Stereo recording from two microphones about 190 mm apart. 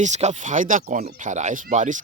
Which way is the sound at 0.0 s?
35° right (ahead or behind).